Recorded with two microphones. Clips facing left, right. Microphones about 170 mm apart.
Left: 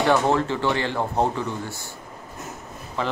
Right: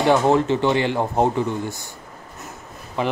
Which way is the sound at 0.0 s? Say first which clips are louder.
Right 3 dB; 20° right (ahead or behind).